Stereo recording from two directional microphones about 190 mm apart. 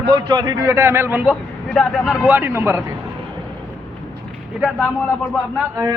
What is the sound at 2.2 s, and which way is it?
Speech, 10° right (ahead or behind).